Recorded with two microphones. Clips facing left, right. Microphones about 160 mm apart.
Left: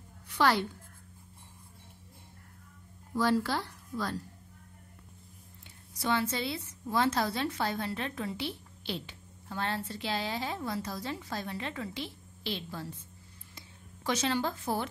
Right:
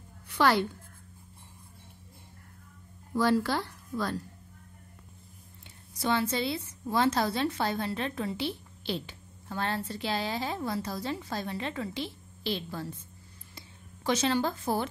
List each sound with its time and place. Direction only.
0.4 s a woman's voice: 55° right (ahead or behind)
3.2 s speech: 55° right (ahead or behind)
5.9 s a woman's voice: 30° right (ahead or behind)
13.6 s a sound: 30° right (ahead or behind)